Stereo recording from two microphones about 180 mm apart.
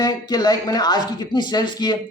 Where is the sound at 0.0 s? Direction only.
20° left (ahead or behind).